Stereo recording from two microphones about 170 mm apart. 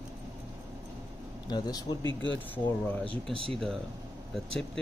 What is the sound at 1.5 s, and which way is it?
Speech, 20° left (ahead or behind).